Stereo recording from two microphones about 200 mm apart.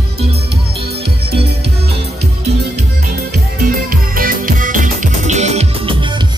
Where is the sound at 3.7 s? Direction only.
45° right (ahead or behind); by 6.3 s 25° right (ahead or behind).